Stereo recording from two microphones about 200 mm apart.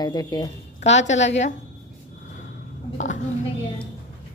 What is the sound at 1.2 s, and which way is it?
Speech, 35° left (ahead or behind).